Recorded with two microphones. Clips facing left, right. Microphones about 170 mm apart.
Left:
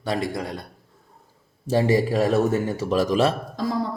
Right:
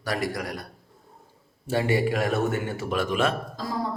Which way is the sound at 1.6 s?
35° left (ahead or behind).